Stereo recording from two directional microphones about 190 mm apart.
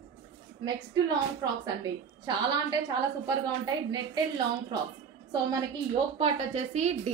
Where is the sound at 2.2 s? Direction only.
25° right (ahead or behind).